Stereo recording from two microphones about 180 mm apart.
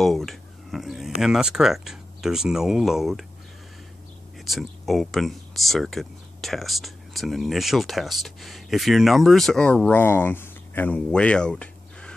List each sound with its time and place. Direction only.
0.0 s speech: centre (ahead or behind)
4.5 s speech: centre (ahead or behind)